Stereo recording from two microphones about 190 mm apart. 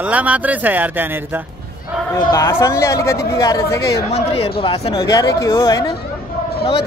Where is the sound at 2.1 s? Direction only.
15° left (ahead or behind).